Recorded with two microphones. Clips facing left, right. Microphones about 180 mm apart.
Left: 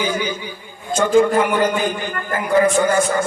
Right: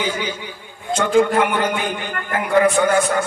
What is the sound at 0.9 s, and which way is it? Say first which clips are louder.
A man's voice: left 1 dB; 65° right (ahead or behind).